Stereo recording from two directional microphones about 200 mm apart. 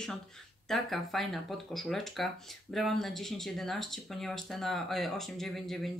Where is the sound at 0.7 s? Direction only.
Centre (ahead or behind).